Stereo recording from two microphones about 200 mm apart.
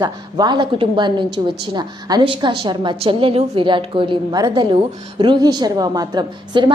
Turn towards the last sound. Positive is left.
turn(degrees=-20)  # may be behind; listen again after turning